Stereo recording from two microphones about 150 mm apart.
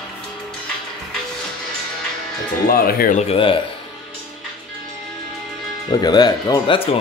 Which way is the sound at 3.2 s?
40° left (ahead or behind).